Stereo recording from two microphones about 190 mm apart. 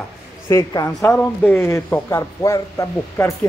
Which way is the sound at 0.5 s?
15° left (ahead or behind).